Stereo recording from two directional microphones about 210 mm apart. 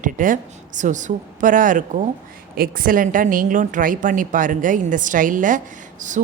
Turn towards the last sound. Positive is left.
turn(degrees=-35)  # may be behind; listen again after turning